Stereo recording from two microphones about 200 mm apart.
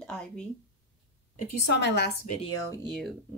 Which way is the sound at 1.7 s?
60° left (ahead or behind).